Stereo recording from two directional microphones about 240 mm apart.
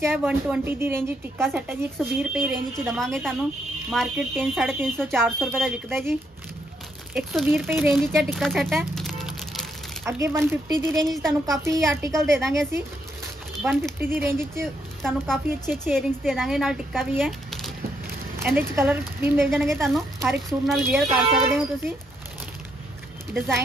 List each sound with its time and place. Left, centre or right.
0.0 s a woman's voice: centre
7.2 s speech: centre
8.1 s a sound: centre
10.0 s a woman's voice: centre
10.9 s speech: centre
11.6 s a woman's voice: centre
12.1 s speech: centre
13.6 s a woman's voice: centre
15.0 s a woman's voice: centre